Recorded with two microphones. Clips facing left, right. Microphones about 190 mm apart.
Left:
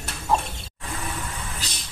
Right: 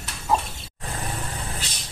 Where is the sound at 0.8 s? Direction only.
35° right (ahead or behind).